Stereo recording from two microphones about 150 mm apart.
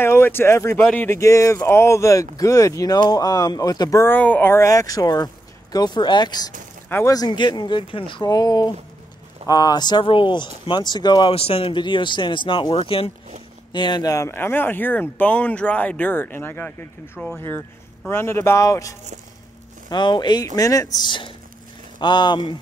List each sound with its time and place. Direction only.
0.0 s speech: 15° left (ahead or behind); by 22.6 s 30° left (ahead or behind)